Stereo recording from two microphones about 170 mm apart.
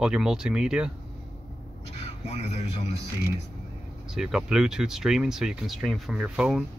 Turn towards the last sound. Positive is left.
turn(degrees=-5)  # may be behind; listen again after turning